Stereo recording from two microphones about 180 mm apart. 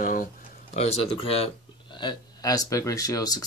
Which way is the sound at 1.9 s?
20° left (ahead or behind).